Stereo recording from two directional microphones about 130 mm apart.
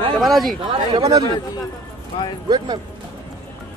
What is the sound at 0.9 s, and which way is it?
Speech, 30° right (ahead or behind).